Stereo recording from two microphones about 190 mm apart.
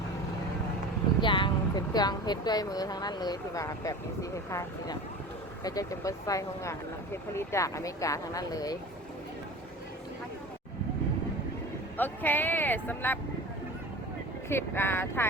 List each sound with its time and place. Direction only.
1.2 s speech: 25° left (ahead or behind)
11.9 s speech: 10° left (ahead or behind)
14.5 s speech: 10° left (ahead or behind)